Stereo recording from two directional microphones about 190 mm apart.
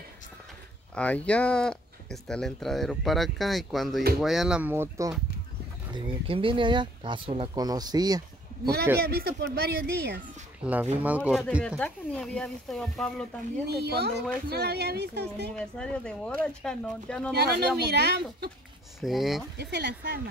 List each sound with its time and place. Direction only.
0.9 s speech: 5° left (ahead or behind); by 5.1 s 15° right (ahead or behind)
5.9 s speech: 30° right (ahead or behind)
9.0 s speech: 55° right (ahead or behind)
10.6 s speech: 10° right (ahead or behind)
11.6 s speech: 5° left (ahead or behind)
13.7 s speech: 60° right (ahead or behind)
15.5 s speech: 5° left (ahead or behind)
17.4 s speech: 60° right (ahead or behind)
18.9 s speech: centre (ahead or behind)
19.6 s speech: 65° right (ahead or behind)